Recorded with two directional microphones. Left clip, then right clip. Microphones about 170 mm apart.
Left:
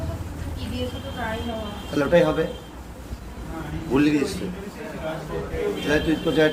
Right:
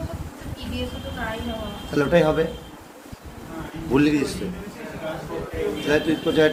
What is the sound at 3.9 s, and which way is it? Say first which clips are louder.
Speech: right 1 dB; 25° right (ahead or behind).